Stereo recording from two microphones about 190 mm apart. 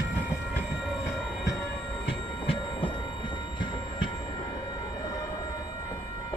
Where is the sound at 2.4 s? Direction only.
25° left (ahead or behind).